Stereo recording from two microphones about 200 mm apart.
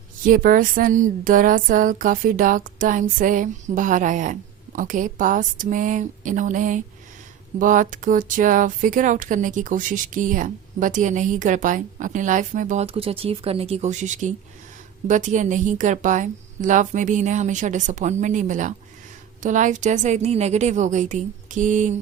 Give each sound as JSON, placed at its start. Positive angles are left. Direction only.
{"t": 0.3, "sound": "speech", "side_deg": -45}